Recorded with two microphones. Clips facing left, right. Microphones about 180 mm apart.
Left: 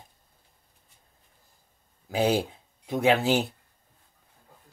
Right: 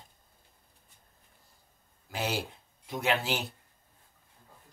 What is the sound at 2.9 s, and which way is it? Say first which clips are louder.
Speech: left 7 dB; 60° left (ahead or behind).